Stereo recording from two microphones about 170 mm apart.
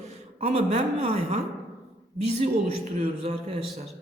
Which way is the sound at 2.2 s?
35° right (ahead or behind).